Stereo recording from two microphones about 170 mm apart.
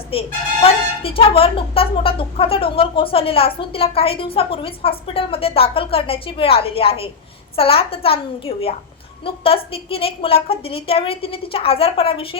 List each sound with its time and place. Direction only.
0.1 s a woman's voice: 35° left (ahead or behind)